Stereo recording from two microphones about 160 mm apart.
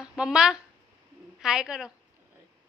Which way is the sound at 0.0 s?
5° right (ahead or behind).